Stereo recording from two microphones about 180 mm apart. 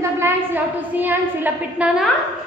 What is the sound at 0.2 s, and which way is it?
A woman's voice, 10° right (ahead or behind).